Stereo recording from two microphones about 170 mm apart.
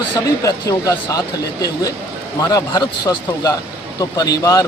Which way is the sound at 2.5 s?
25° left (ahead or behind).